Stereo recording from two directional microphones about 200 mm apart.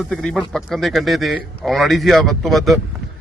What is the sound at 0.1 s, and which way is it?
Speech, 5° left (ahead or behind).